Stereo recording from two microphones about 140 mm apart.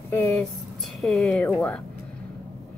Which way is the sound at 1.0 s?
5° left (ahead or behind).